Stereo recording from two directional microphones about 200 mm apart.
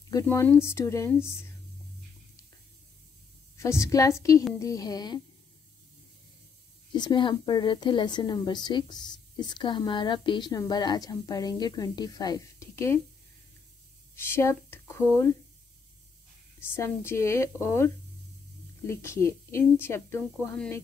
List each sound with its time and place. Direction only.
0.1 s a woman's voice: 15° left (ahead or behind)
3.5 s a woman's voice: 15° left (ahead or behind)
6.9 s a woman's voice: 20° left (ahead or behind)
14.1 s speech: 10° left (ahead or behind)
16.5 s a woman's voice: 10° left (ahead or behind)